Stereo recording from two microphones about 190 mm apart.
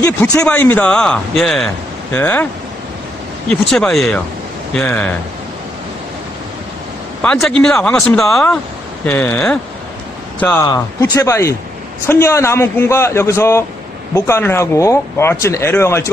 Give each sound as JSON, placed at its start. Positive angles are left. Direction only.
{"t": 0.4, "sound": "speech", "side_deg": 10}
{"t": 3.4, "sound": "speech", "side_deg": 5}
{"t": 7.2, "sound": "speech", "side_deg": 5}
{"t": 10.7, "sound": "speech", "side_deg": 20}